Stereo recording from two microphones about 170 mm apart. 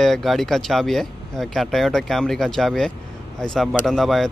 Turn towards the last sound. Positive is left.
turn(degrees=0)  # may be behind; listen again after turning